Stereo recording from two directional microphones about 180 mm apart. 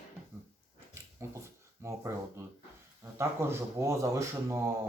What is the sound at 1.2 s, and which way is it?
Speech, 15° right (ahead or behind).